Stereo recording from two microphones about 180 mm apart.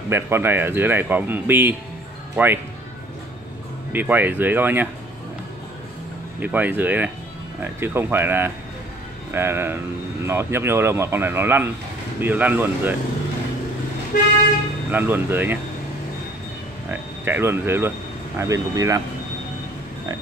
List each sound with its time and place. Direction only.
0.1 s speech: 15° right (ahead or behind)
3.9 s speech: 10° right (ahead or behind)
6.4 s speech: 10° right (ahead or behind)
14.9 s speech: 10° right (ahead or behind)
16.9 s speech: 10° right (ahead or behind)